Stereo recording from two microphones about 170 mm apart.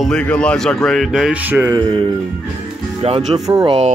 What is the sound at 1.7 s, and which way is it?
Speech, 25° right (ahead or behind).